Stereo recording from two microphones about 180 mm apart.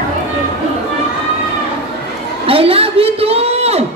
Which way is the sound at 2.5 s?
30° right (ahead or behind).